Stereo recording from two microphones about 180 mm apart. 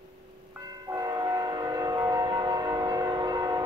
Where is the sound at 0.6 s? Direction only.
20° right (ahead or behind).